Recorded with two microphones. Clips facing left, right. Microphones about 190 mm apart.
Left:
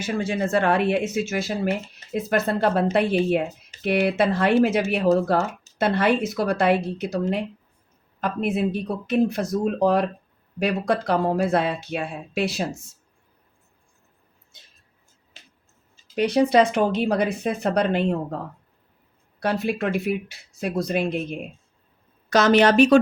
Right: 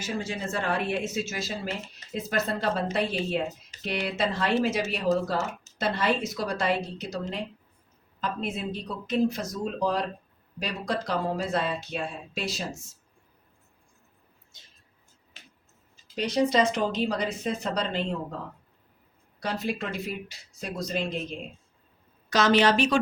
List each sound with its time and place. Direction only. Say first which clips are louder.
0.0 s speech: left 7 dB; 60° left (ahead or behind)
16.1 s speech: left 6 dB; 60° left (ahead or behind)
19.4 s speech: left 6 dB; 60° left (ahead or behind)
22.3 s speech: left 5 dB; 50° left (ahead or behind)